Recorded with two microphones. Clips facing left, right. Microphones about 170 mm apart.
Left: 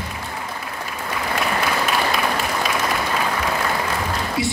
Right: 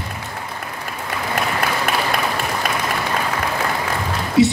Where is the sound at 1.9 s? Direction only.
55° right (ahead or behind).